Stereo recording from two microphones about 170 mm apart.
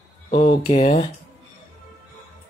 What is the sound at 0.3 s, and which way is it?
Speech, 30° left (ahead or behind).